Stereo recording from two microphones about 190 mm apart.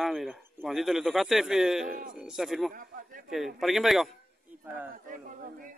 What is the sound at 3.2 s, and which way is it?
Speech, centre (ahead or behind).